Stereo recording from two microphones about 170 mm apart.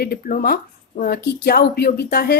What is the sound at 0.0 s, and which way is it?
A woman's voice, 60° left (ahead or behind).